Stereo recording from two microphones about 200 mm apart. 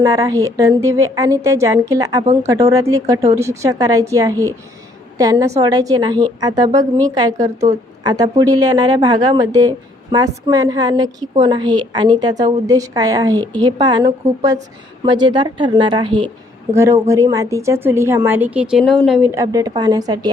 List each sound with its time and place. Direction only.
0.0 s a woman's voice: 15° right (ahead or behind)
16.7 s a woman's voice: 15° right (ahead or behind)
19.3 s a woman's voice: 15° right (ahead or behind)